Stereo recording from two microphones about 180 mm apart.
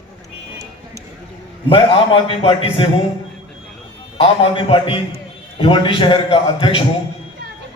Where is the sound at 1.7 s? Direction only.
30° left (ahead or behind).